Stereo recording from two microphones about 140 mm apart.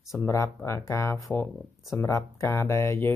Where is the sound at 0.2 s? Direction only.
20° left (ahead or behind).